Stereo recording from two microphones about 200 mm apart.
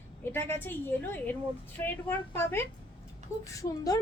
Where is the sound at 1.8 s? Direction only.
10° left (ahead or behind).